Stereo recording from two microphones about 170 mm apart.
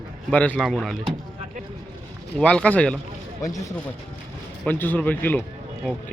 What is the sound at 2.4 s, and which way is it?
Speech, 5° left (ahead or behind).